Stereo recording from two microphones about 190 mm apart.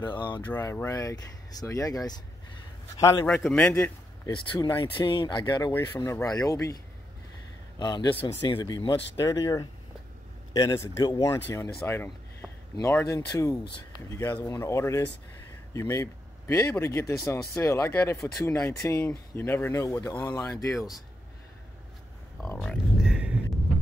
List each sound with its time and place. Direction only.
0.0 s speech: 25° left (ahead or behind)
0.5 s speech: 10° left (ahead or behind)
3.3 s a man's voice: 5° left (ahead or behind)
4.3 s speech: 25° left (ahead or behind)
7.8 s speech: 20° left (ahead or behind)
22.4 s a sound: 5° left (ahead or behind)